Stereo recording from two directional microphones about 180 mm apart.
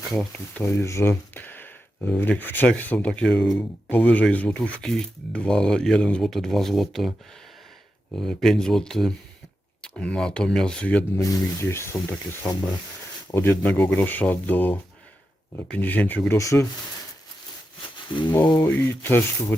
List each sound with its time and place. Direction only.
0.1 s speech: 5° left (ahead or behind)
8.1 s speech: 5° left (ahead or behind)
18.1 s speech: 25° left (ahead or behind)
18.6 s speech: 10° left (ahead or behind)